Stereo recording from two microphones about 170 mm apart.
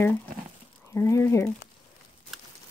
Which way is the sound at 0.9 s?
15° left (ahead or behind).